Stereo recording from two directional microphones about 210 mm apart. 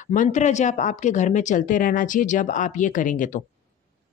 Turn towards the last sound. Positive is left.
turn(degrees=40)  # may be behind; listen again after turning